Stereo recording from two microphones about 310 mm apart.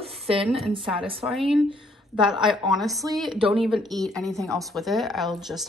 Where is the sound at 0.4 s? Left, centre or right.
Centre.